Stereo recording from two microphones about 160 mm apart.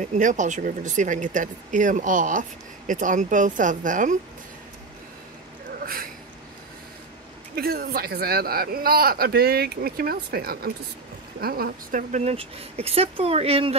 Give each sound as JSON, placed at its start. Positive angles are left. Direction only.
{"t": 0.0, "sound": "speech", "side_deg": -50}
{"t": 7.5, "sound": "a man's voice", "side_deg": -70}
{"t": 12.3, "sound": "speech", "side_deg": -40}